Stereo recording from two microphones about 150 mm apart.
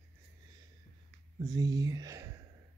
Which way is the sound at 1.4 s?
25° right (ahead or behind).